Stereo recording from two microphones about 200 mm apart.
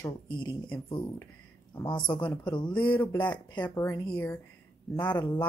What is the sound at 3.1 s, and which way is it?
Speech, 10° left (ahead or behind).